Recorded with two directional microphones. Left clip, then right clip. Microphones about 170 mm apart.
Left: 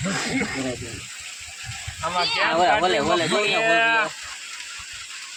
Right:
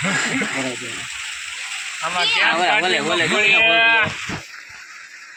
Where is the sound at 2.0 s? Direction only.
45° left (ahead or behind).